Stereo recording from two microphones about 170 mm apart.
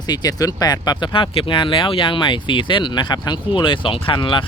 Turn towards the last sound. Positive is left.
turn(degrees=30)  # may be behind; listen again after turning